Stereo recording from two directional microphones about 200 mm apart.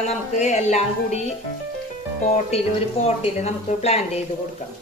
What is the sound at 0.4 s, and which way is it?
Speech, 35° left (ahead or behind).